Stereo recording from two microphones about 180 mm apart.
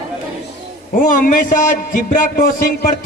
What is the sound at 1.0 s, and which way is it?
Speech, 50° left (ahead or behind).